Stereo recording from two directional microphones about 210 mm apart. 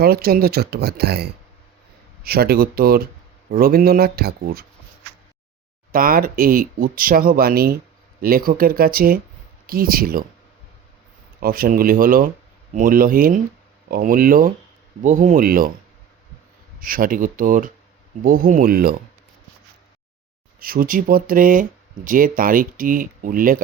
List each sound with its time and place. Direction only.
0.0 s speech: 45° right (ahead or behind)
5.9 s speech: 45° right (ahead or behind)
11.3 s speech: 45° right (ahead or behind)
16.8 s speech: 40° right (ahead or behind)
20.6 s speech: 45° right (ahead or behind)